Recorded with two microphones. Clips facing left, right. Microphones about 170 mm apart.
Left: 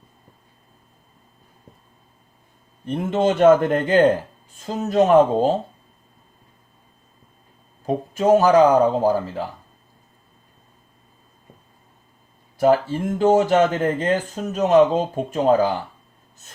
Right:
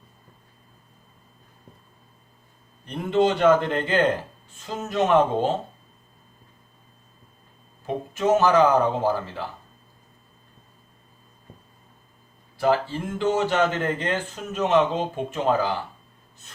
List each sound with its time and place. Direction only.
2.8 s speech: 50° left (ahead or behind)
7.9 s speech: 35° left (ahead or behind)
12.5 s speech: 45° left (ahead or behind)